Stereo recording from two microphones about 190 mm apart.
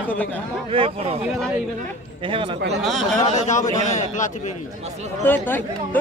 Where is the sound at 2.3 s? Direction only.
25° right (ahead or behind).